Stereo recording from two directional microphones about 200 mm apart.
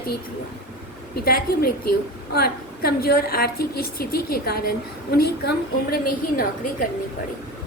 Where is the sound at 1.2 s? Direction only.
50° left (ahead or behind).